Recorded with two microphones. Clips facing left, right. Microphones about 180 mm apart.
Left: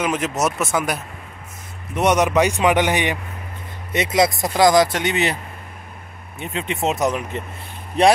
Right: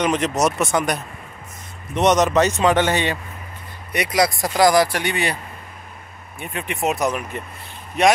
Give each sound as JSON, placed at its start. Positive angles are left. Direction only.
{"t": 0.0, "sound": "a man's voice", "side_deg": 5}
{"t": 6.4, "sound": "speech", "side_deg": 20}
{"t": 8.0, "sound": "speech", "side_deg": 30}